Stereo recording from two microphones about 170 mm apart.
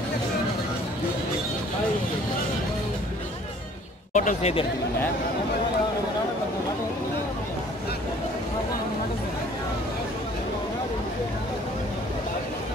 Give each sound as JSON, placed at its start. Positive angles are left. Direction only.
{"t": 4.1, "sound": "a man's voice", "side_deg": 45}